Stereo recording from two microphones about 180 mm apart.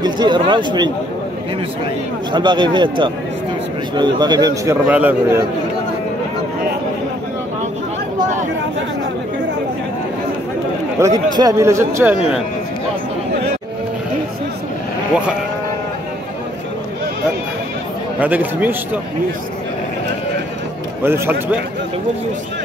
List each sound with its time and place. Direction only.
0.0 s speech: 25° right (ahead or behind)
2.3 s speech: 25° right (ahead or behind)
4.8 s speech: 10° right (ahead or behind)
11.0 s speech: 15° right (ahead or behind)
18.2 s speech: 10° right (ahead or behind)
21.0 s speech: 10° right (ahead or behind)